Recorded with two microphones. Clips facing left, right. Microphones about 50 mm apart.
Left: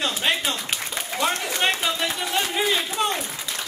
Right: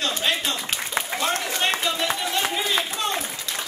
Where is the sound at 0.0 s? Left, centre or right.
Centre.